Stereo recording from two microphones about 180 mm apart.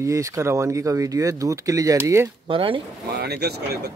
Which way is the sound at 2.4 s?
30° right (ahead or behind).